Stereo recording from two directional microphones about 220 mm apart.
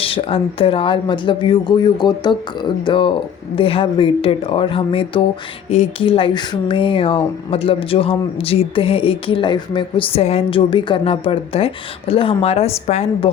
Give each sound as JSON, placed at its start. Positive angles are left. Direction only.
{"t": 0.0, "sound": "speech", "side_deg": 25}